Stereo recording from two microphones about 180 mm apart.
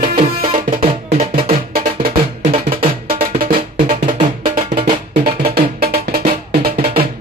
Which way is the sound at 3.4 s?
50° right (ahead or behind).